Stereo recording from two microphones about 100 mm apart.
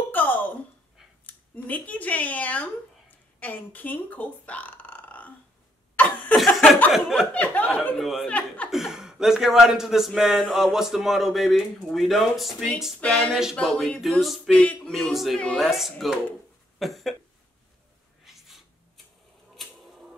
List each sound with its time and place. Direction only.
0.1 s a sound: 15° left (ahead or behind)
1.2 s speech: 15° left (ahead or behind)
5.9 s cough: 15° left (ahead or behind)
6.3 s chuckle: centre (ahead or behind)
6.9 s speech: centre (ahead or behind)
7.3 s speech: 15° left (ahead or behind)
8.0 s speech: centre (ahead or behind)
8.3 s speech: 15° left (ahead or behind)
8.6 s speech: 5° right (ahead or behind)
14.5 s speech: 10° left (ahead or behind)
14.9 s speech: centre (ahead or behind)
15.6 s speech: centre (ahead or behind)
16.7 s a sound: centre (ahead or behind)
18.2 s a sound: centre (ahead or behind)